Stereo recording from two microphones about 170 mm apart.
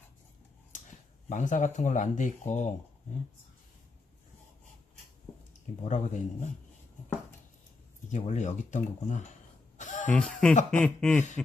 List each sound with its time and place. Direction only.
1.3 s speech: 45° left (ahead or behind)
5.8 s speech: 45° left (ahead or behind)
8.1 s speech: 45° left (ahead or behind)
9.7 s a sound: 45° left (ahead or behind)
10.1 s speech: 5° left (ahead or behind)
10.7 s a sound: 5° left (ahead or behind)